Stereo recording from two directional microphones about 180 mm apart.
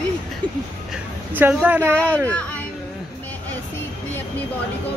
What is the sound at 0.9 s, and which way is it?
Speech, 5° right (ahead or behind).